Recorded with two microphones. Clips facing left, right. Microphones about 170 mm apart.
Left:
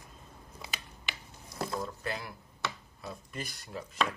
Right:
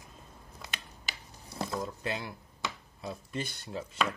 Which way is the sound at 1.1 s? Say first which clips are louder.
Left 1 dB; 40° right (ahead or behind).